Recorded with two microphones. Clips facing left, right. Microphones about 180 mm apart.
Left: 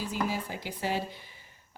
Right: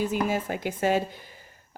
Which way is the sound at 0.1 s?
50° right (ahead or behind).